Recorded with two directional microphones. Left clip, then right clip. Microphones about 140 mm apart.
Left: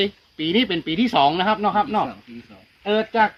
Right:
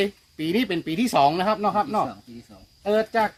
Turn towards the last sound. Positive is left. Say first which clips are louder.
# left 4 dB
turn(degrees=-30)  # may be behind; listen again after turning